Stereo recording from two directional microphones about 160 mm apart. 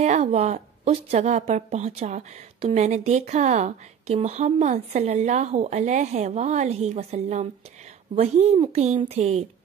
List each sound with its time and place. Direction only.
0.0 s a woman's voice: 45° right (ahead or behind)